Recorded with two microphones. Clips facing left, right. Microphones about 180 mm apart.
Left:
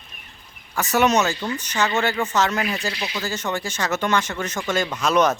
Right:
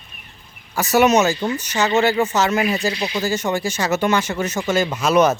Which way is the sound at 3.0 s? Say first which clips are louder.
Right 6 dB; 25° right (ahead or behind).